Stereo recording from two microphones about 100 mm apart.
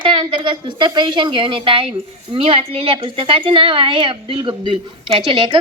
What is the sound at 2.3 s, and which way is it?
A woman's voice, 75° right (ahead or behind).